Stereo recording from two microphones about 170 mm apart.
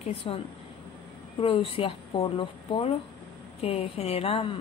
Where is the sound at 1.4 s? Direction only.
30° left (ahead or behind).